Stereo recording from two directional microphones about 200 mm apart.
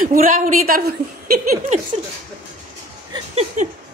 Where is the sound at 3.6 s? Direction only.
35° right (ahead or behind).